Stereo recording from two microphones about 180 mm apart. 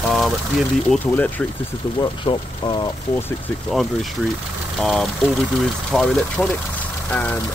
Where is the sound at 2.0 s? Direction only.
25° left (ahead or behind).